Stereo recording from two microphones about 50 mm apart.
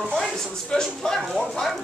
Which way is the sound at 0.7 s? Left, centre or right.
Centre.